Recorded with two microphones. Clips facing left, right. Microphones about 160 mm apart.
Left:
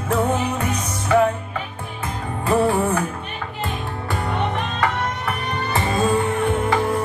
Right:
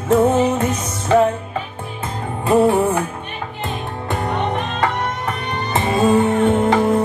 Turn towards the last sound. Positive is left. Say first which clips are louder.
# right 5 dB
turn(degrees=-25)  # may be behind; listen again after turning